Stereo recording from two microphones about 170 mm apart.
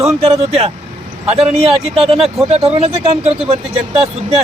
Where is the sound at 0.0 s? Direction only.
40° right (ahead or behind).